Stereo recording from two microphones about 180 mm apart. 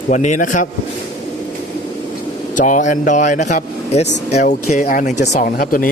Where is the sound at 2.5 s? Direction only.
45° left (ahead or behind).